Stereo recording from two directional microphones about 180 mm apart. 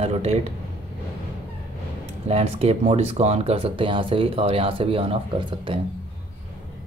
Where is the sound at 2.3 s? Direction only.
35° right (ahead or behind).